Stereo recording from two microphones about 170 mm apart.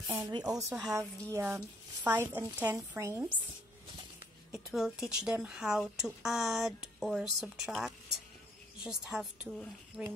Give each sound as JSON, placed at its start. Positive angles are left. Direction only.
{"t": 0.0, "sound": "speech", "side_deg": -10}
{"t": 0.3, "sound": "a woman's voice", "side_deg": -20}
{"t": 4.5, "sound": "speech", "side_deg": 0}